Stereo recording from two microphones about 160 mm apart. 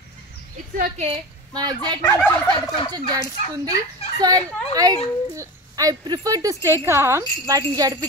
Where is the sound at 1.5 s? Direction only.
25° right (ahead or behind).